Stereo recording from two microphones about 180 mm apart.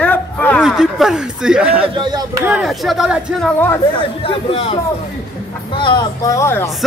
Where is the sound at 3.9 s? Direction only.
35° left (ahead or behind).